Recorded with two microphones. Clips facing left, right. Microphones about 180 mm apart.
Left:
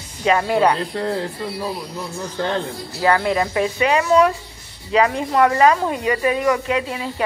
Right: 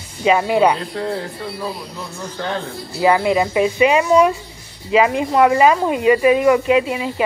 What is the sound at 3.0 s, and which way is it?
Speech, 10° right (ahead or behind).